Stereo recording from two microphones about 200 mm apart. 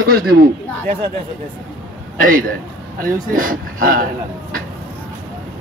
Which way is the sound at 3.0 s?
45° right (ahead or behind).